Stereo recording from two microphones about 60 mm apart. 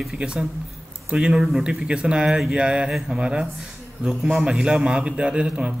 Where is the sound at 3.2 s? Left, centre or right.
Centre.